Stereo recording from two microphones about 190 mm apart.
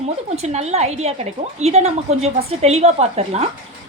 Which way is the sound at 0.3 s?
35° right (ahead or behind).